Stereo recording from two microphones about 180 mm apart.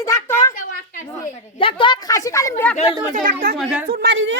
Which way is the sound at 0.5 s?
50° left (ahead or behind).